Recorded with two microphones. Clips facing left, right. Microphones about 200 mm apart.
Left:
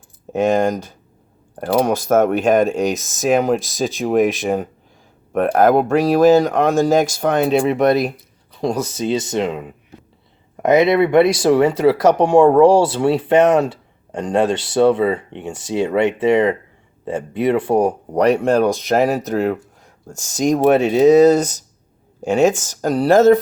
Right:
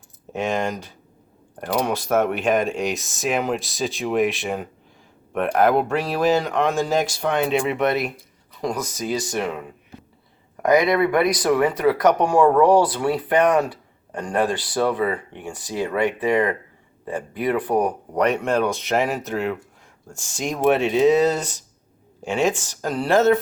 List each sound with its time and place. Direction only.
0.3 s speech: 40° left (ahead or behind)
8.1 s speech: 25° left (ahead or behind)